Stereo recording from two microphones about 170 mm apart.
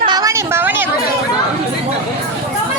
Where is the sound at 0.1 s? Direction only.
20° right (ahead or behind).